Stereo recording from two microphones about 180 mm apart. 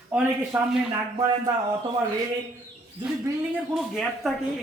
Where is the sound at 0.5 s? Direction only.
15° right (ahead or behind).